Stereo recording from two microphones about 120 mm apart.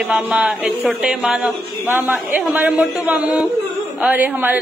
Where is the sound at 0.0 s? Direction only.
10° right (ahead or behind).